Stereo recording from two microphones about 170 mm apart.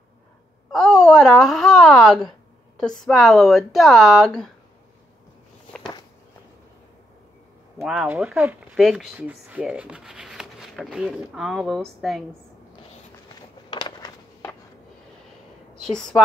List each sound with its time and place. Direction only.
0.7 s speech: 5° left (ahead or behind)
7.8 s speech: 5° right (ahead or behind)
13.7 s a sound: 25° left (ahead or behind)
15.8 s speech: 5° left (ahead or behind)